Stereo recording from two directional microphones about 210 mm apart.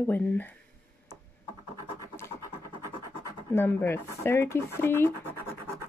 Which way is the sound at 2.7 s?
25° right (ahead or behind).